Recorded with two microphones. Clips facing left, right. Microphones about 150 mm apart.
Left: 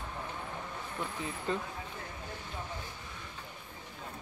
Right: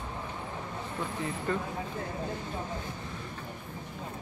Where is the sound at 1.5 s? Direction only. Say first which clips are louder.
Right 2 dB; 20° left (ahead or behind).